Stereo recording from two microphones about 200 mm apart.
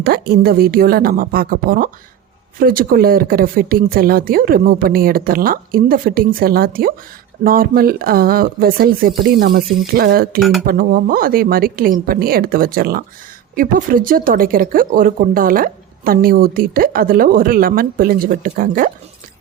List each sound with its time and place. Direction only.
0.0 s speech: 50° right (ahead or behind)